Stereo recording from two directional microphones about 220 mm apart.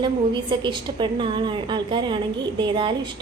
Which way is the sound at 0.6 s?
20° right (ahead or behind).